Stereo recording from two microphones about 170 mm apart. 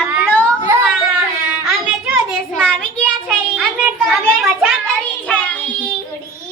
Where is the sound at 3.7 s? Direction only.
5° right (ahead or behind).